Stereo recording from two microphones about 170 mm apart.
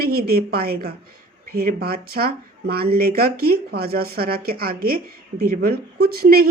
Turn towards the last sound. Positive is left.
turn(degrees=-60)  # may be behind; listen again after turning